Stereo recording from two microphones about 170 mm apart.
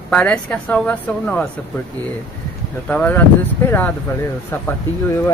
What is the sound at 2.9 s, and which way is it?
Speech, 10° left (ahead or behind).